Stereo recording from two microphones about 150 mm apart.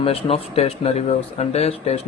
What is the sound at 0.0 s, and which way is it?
Speech, 40° left (ahead or behind).